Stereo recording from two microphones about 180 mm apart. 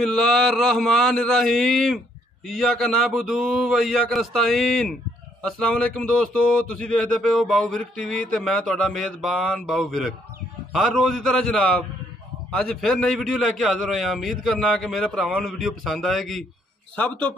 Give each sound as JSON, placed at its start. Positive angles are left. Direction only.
{"t": 0.0, "sound": "speech", "side_deg": 0}